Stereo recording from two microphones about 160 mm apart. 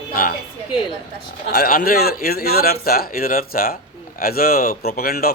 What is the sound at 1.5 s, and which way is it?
A man's voice, 65° left (ahead or behind).